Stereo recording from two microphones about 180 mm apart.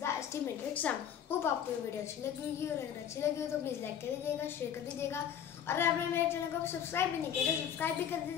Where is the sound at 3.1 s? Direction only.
15° left (ahead or behind).